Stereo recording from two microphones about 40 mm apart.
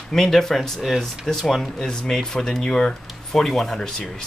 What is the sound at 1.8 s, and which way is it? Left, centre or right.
Speech, centre.